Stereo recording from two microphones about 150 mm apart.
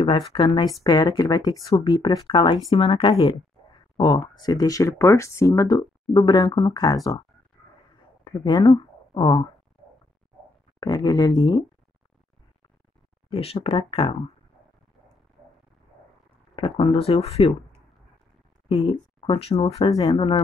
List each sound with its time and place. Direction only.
0.3 s speech: 35° left (ahead or behind)
2.0 s speech: 35° left (ahead or behind)
8.5 s speech: 30° left (ahead or behind)
10.8 s speech: 25° left (ahead or behind)
13.3 s speech: 40° left (ahead or behind)
16.5 s speech: 35° left (ahead or behind)
18.7 s speech: 35° left (ahead or behind)
19.9 s speech: 25° left (ahead or behind)